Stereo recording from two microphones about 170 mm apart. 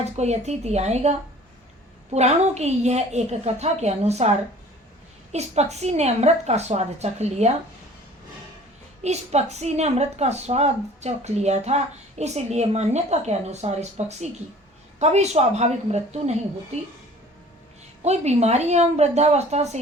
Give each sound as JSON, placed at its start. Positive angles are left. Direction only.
{"t": 0.0, "sound": "a woman's voice", "side_deg": -40}
{"t": 2.1, "sound": "a woman's voice", "side_deg": -40}
{"t": 5.3, "sound": "a woman's voice", "side_deg": -40}
{"t": 9.0, "sound": "a woman's voice", "side_deg": -40}
{"t": 18.0, "sound": "a woman's voice", "side_deg": -40}